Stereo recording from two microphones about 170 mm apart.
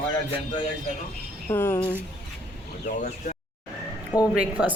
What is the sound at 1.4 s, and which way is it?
Speech, 15° left (ahead or behind).